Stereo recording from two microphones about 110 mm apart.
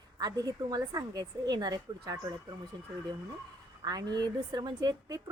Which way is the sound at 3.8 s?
35° right (ahead or behind).